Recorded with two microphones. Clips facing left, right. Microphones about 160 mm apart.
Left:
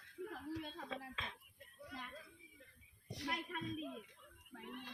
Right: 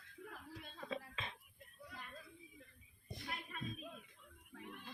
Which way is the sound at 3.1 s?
80° left.